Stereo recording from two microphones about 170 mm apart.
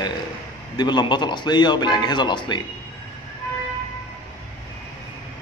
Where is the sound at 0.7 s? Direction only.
25° left (ahead or behind).